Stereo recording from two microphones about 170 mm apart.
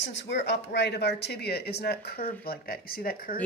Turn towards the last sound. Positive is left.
turn(degrees=55)  # may be behind; listen again after turning